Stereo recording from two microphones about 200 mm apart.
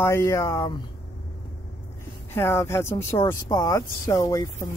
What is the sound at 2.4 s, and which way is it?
Speech, 10° left (ahead or behind).